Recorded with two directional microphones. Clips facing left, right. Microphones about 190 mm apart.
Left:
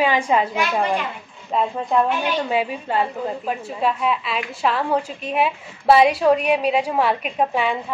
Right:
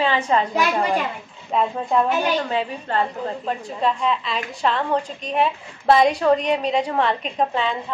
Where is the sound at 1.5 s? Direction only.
Centre (ahead or behind).